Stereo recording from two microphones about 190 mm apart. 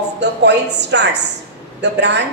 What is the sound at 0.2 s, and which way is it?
A woman's voice, 65° right (ahead or behind).